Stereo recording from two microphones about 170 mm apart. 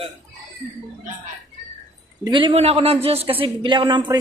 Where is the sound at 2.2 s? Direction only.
30° right (ahead or behind).